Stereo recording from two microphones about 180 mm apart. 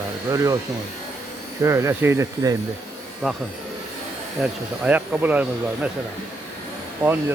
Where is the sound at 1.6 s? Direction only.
15° right (ahead or behind).